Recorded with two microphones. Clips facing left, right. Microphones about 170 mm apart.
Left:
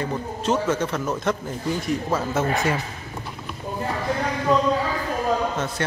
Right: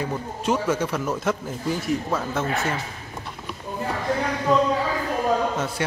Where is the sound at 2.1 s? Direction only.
5° left (ahead or behind).